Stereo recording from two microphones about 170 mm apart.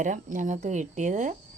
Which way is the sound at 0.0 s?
50° right (ahead or behind).